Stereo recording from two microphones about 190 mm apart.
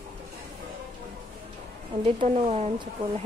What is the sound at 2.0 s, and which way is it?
Speech, 30° right (ahead or behind).